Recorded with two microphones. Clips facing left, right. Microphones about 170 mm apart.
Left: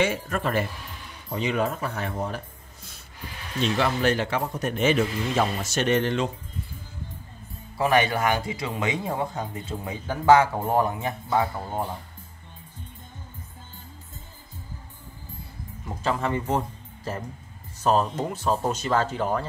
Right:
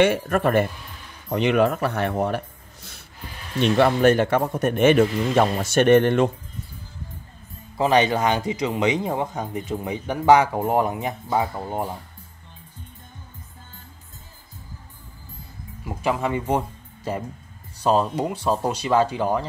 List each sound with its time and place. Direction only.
0.0 s speech: 60° right (ahead or behind)
1.3 s speech: 70° right (ahead or behind)
7.7 s speech: 20° right (ahead or behind)
15.8 s speech: 10° right (ahead or behind)